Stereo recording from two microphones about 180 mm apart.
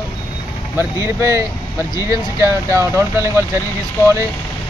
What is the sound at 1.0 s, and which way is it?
Speech, 15° right (ahead or behind).